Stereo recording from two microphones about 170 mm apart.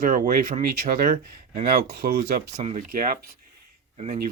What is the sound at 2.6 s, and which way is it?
Speech, 50° right (ahead or behind).